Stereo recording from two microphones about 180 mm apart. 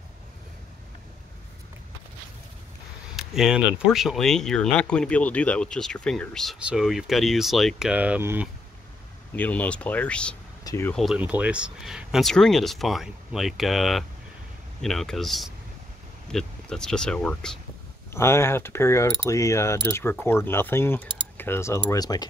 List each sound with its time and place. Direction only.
3.2 s speech: centre (ahead or behind)
9.3 s mechanisms: 10° left (ahead or behind)
10.6 s a sound: 20° left (ahead or behind)
10.9 s speech: centre (ahead or behind)
18.1 s mechanisms: 15° left (ahead or behind)